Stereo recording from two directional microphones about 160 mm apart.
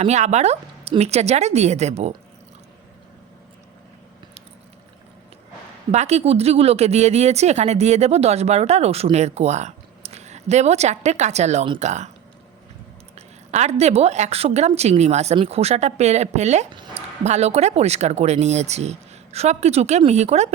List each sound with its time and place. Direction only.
0.0 s speech: 45° right (ahead or behind)
5.9 s speech: 45° right (ahead or behind)
13.1 s speech: 45° right (ahead or behind)